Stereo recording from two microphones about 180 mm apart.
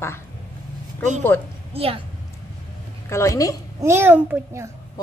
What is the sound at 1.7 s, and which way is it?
Speech, 30° right (ahead or behind).